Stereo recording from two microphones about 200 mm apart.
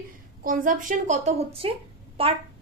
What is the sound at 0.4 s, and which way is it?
A woman's voice, 45° right (ahead or behind).